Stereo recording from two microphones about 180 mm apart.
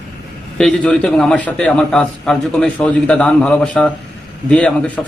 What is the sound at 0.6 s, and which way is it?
A man's voice, 5° left (ahead or behind).